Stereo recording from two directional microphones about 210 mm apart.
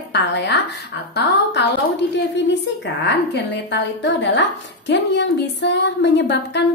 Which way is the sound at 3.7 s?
60° left (ahead or behind).